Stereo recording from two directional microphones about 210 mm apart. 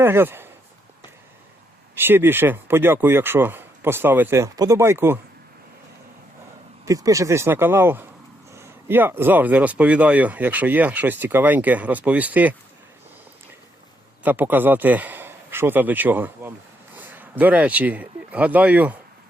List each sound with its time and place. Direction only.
0.0 s speech: 10° right (ahead or behind)
2.0 s speech: 10° right (ahead or behind)
6.8 s speech: 15° right (ahead or behind)
14.3 s speech: 10° right (ahead or behind)